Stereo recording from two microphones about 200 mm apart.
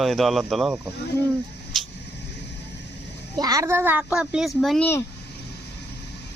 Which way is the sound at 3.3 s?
20° right (ahead or behind).